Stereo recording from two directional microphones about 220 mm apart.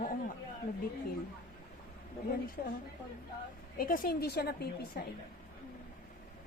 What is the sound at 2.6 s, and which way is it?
Speech, 40° left (ahead or behind).